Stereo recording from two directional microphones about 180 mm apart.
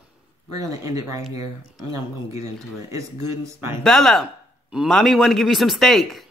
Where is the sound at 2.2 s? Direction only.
15° right (ahead or behind).